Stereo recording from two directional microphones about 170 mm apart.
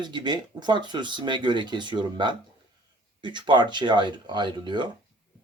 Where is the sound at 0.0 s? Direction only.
25° right (ahead or behind).